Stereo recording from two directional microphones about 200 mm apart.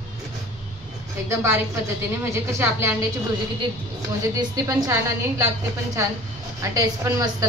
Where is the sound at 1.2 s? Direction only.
15° right (ahead or behind).